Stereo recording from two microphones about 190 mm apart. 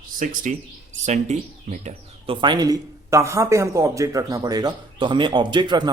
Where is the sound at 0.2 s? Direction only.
45° right (ahead or behind).